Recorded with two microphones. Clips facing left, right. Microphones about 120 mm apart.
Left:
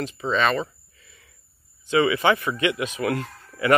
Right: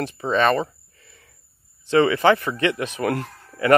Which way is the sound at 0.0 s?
50° right (ahead or behind).